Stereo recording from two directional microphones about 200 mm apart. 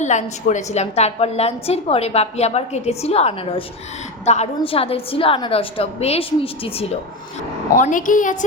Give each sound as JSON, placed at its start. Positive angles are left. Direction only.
{"t": 0.0, "sound": "a woman's voice", "side_deg": 35}
{"t": 7.8, "sound": "a woman's voice", "side_deg": 40}